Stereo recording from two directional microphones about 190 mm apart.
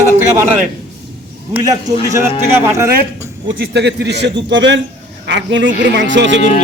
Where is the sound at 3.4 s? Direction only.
65° right (ahead or behind).